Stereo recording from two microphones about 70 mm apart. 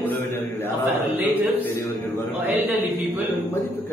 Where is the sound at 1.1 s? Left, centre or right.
Right.